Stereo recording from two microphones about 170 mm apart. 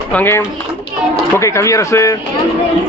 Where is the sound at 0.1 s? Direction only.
10° left (ahead or behind).